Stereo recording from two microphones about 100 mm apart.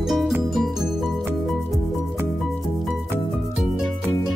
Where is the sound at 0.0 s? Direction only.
Centre (ahead or behind).